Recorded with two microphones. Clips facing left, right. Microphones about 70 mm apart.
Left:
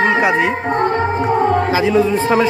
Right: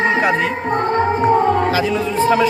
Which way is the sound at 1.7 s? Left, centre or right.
Left.